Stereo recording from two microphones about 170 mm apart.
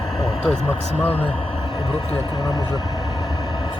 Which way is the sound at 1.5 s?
25° left (ahead or behind).